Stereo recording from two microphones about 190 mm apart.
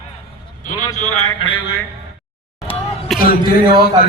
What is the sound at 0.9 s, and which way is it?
Speech, 35° left (ahead or behind).